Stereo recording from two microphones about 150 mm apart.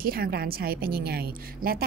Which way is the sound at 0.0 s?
80° right.